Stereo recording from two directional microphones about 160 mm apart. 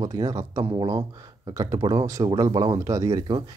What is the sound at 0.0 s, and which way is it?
Speech, 25° right (ahead or behind).